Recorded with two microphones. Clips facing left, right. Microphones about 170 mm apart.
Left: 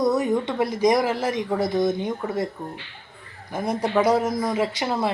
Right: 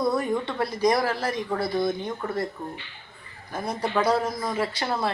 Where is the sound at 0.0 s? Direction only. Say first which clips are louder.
Left 4 dB; 20° left (ahead or behind).